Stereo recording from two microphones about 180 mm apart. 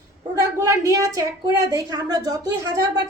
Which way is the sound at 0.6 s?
15° right (ahead or behind).